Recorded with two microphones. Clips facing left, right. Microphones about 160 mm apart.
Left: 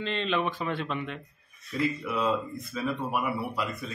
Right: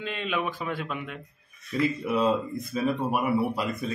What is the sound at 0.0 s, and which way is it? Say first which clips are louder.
Speech: left 1 dB; 10° right (ahead or behind).